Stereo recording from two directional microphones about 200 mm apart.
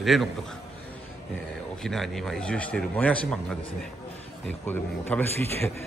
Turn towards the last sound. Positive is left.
turn(degrees=10)  # may be behind; listen again after turning